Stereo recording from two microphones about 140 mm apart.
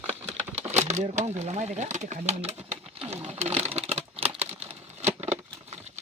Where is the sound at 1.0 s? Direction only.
55° right (ahead or behind).